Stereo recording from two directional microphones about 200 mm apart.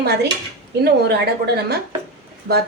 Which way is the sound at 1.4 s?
50° right (ahead or behind).